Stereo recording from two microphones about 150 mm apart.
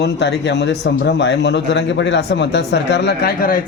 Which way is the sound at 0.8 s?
90° left.